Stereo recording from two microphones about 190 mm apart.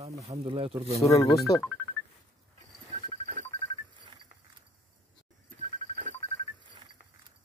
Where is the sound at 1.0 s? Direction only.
15° left (ahead or behind).